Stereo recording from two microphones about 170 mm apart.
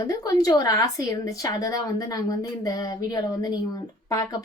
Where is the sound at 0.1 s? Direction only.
20° left (ahead or behind).